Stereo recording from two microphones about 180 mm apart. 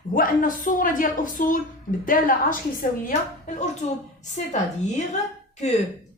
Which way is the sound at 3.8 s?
40° left (ahead or behind).